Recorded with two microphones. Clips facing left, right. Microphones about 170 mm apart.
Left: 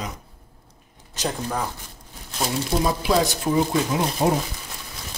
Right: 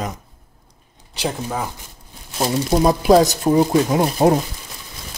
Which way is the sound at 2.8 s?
45° right (ahead or behind).